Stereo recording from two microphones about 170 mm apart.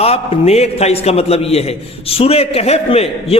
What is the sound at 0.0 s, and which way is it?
A man's voice, 35° left (ahead or behind).